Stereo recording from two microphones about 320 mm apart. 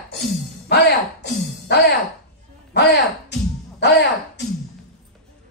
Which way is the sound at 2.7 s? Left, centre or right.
Left.